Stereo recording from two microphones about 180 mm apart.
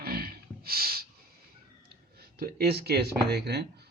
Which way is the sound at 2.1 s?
60° right (ahead or behind).